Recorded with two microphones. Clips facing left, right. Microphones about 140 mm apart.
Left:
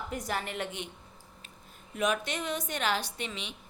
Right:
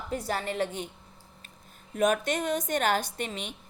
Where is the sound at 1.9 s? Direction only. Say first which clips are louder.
Right 5 dB; 45° right (ahead or behind).